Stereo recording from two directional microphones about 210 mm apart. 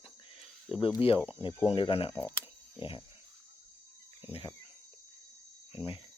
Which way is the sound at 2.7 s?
25° left (ahead or behind).